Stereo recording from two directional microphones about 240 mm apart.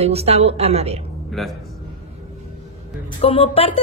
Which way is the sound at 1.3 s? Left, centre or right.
Centre.